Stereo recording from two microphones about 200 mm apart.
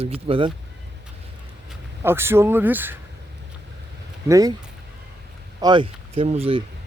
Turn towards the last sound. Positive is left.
turn(degrees=-30)  # may be behind; listen again after turning